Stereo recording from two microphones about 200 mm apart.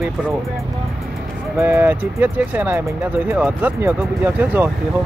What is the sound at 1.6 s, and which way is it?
Speech, 10° right (ahead or behind).